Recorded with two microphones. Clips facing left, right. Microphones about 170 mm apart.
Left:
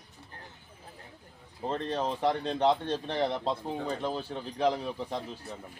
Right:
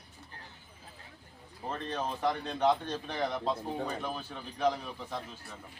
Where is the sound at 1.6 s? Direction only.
25° left (ahead or behind).